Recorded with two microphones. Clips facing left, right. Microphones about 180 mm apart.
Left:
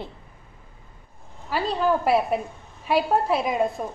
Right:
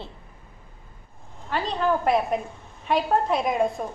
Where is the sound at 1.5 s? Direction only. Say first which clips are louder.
Left 1 dB; 5° left (ahead or behind).